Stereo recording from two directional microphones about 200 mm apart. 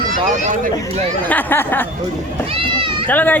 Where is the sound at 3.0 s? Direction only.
10° left (ahead or behind).